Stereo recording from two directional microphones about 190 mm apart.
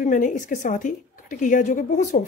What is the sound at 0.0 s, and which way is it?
A woman's voice, 40° left (ahead or behind).